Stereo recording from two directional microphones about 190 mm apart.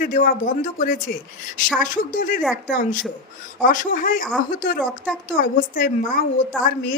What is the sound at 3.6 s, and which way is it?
Speech, 45° left (ahead or behind).